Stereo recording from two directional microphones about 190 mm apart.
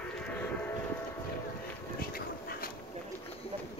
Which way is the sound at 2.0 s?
50° left (ahead or behind).